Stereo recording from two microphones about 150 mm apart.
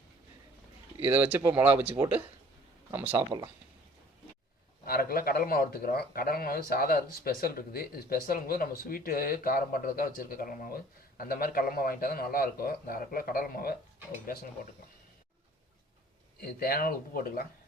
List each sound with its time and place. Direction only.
1.0 s speech: 10° right (ahead or behind)
3.2 s speech: 30° right (ahead or behind)
4.9 s a man's voice: 80° left
16.4 s speech: 80° left